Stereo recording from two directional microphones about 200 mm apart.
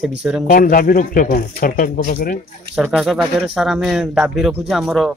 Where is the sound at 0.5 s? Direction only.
45° left (ahead or behind).